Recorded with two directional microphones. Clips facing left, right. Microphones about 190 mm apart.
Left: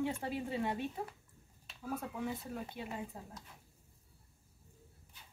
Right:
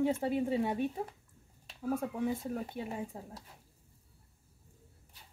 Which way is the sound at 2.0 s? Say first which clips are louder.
Right 4 dB; 20° right (ahead or behind).